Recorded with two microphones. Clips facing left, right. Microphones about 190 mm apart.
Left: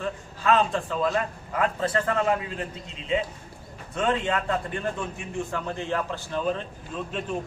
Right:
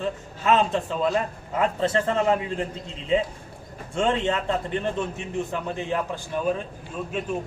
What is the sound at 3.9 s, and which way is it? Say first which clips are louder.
A man's voice: right 2 dB; 25° right (ahead or behind).